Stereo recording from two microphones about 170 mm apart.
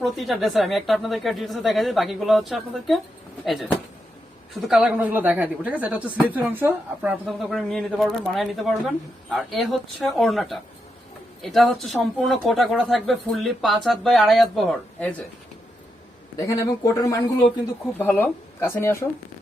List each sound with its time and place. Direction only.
0.0 s speech: centre (ahead or behind)
16.5 s speech: 20° left (ahead or behind)